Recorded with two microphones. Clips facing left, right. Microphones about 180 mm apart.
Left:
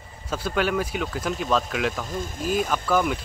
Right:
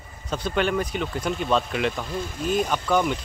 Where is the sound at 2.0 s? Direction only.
45° left (ahead or behind).